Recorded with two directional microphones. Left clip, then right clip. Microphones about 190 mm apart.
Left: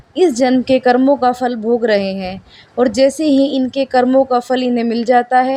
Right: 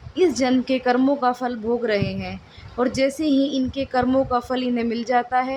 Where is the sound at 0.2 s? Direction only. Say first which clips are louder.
Left 7 dB; 35° left (ahead or behind).